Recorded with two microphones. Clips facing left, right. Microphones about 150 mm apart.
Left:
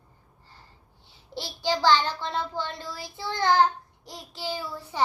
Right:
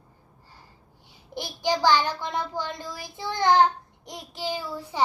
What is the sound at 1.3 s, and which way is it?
Child singing, 15° right (ahead or behind).